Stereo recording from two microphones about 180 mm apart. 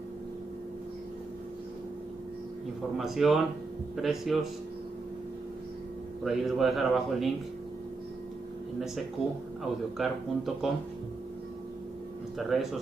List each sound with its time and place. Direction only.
3.0 s a man's voice: centre (ahead or behind)
6.2 s a man's voice: centre (ahead or behind)
8.7 s a man's voice: centre (ahead or behind)
12.4 s a man's voice: centre (ahead or behind)